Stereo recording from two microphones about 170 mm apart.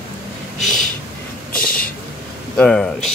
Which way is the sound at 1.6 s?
55° left (ahead or behind).